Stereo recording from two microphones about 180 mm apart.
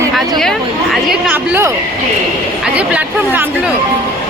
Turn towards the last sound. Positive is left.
turn(degrees=-10)  # may be behind; listen again after turning